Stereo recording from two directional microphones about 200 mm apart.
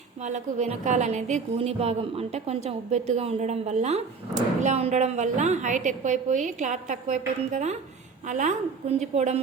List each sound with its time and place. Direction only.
0.2 s a woman's voice: 35° right (ahead or behind)